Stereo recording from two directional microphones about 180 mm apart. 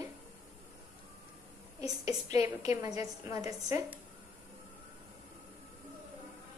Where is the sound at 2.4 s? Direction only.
20° right (ahead or behind).